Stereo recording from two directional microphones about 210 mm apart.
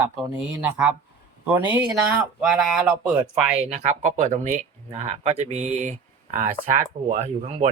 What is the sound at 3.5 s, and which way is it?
Speech, 30° right (ahead or behind).